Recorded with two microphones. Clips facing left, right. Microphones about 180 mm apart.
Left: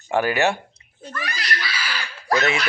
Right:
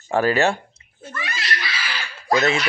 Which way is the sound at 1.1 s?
25° right (ahead or behind).